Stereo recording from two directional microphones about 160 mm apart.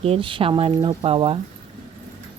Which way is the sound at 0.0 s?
35° right (ahead or behind).